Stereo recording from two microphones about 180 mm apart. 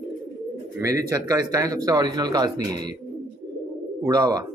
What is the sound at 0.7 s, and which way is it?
A man's voice, 15° right (ahead or behind).